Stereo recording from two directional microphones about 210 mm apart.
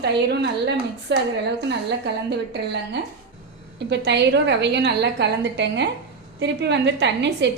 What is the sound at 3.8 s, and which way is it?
A woman's voice, 55° right (ahead or behind).